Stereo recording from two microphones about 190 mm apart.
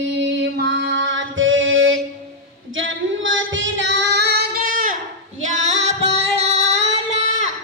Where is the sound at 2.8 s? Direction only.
90° right; by 6.6 s 35° right (ahead or behind).